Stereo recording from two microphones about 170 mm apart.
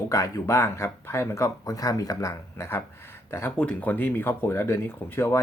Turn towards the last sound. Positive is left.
turn(degrees=15)  # may be behind; listen again after turning